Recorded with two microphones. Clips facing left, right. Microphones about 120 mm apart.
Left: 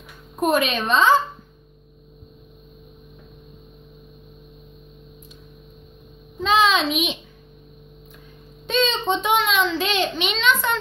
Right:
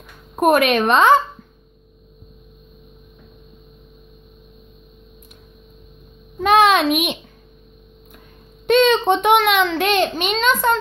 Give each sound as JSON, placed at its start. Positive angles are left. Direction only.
{"t": 0.4, "sound": "a child's voice", "side_deg": -60}
{"t": 6.4, "sound": "a child's voice", "side_deg": -60}
{"t": 8.6, "sound": "a child's voice", "side_deg": -60}